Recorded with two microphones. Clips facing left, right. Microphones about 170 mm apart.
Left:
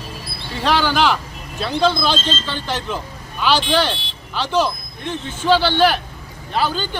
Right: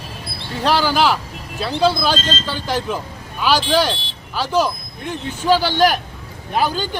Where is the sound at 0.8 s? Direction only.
5° right (ahead or behind).